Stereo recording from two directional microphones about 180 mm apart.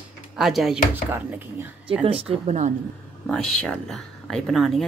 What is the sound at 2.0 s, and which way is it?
Speech, 35° right (ahead or behind).